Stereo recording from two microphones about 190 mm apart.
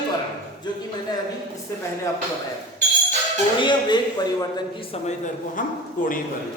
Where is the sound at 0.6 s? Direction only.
20° left (ahead or behind).